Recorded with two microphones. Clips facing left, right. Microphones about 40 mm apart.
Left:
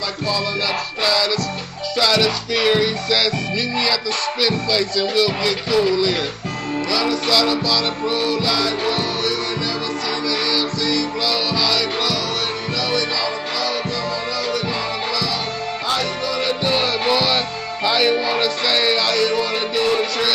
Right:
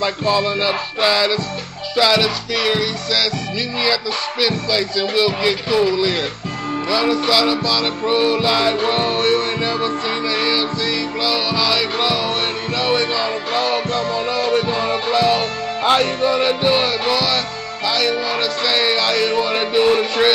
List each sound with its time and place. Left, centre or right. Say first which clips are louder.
0.0 s music: right 5 dB; right
2.0 s music: right 2 dB; centre
2.6 s music: left 3 dB; centre
3.8 s music: right 1 dB; centre
6.9 s music: right 3 dB; centre; by 9.4 s right
10.2 s music: right 2 dB; right
16.7 s music: right 1 dB; centre
17.1 s music: even; centre